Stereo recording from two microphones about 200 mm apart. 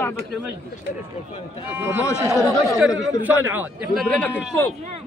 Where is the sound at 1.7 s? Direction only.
10° right (ahead or behind); by 4.3 s 5° left (ahead or behind).